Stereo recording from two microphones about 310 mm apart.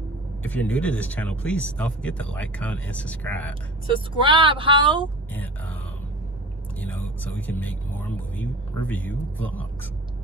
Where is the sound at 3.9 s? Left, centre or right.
Centre.